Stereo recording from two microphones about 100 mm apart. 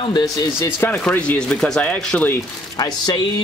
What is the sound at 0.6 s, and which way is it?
Speech, 25° left (ahead or behind).